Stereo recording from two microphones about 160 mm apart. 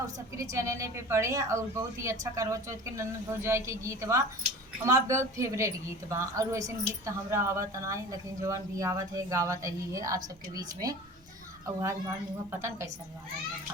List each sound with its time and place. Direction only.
0.3 s a woman's voice: 20° right (ahead or behind)